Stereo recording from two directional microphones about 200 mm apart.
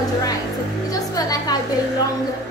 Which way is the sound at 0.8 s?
20° left (ahead or behind).